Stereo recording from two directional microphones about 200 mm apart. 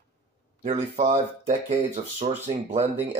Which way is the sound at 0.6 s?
35° right (ahead or behind).